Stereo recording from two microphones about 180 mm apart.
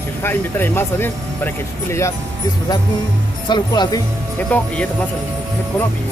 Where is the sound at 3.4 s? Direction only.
25° left (ahead or behind).